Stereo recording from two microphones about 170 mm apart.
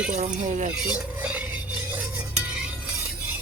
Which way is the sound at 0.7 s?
5° right (ahead or behind).